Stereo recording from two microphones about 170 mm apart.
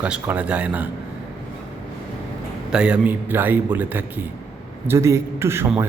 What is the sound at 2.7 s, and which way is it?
A man's voice, 5° right (ahead or behind).